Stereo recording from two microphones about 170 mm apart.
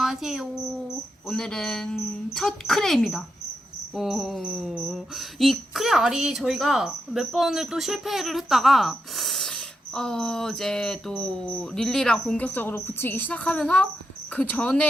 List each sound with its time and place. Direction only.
0.0 s cricket: centre (ahead or behind)
1.3 s speech: 5° left (ahead or behind)